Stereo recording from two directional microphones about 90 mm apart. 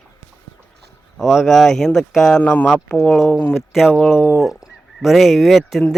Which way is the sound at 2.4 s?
15° left (ahead or behind).